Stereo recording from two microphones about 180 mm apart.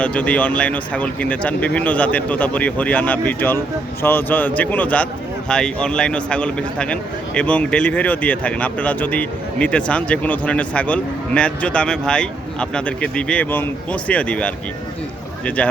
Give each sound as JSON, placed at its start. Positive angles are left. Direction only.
{"t": 0.0, "sound": "a man's voice", "side_deg": 5}